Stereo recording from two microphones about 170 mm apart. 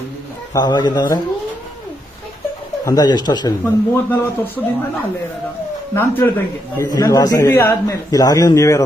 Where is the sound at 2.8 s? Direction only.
25° left (ahead or behind).